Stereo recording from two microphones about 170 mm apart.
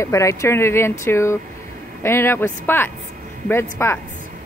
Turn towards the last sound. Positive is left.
turn(degrees=15)  # may be behind; listen again after turning